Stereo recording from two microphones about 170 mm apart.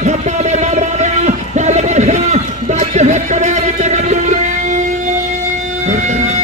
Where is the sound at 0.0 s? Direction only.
45° right (ahead or behind).